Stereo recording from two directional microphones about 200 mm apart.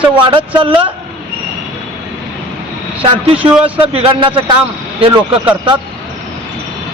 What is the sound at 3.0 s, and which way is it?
Speech, 25° right (ahead or behind).